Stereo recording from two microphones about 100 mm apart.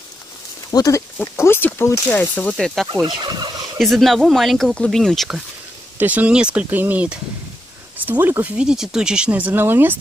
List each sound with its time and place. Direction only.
0.7 s speech: 35° left (ahead or behind)
1.1 s speech: 25° left (ahead or behind)
2.5 s speech: centre (ahead or behind)
3.0 s fowl: 50° right (ahead or behind)
3.7 s speech: centre (ahead or behind)
5.9 s speech: 15° right (ahead or behind)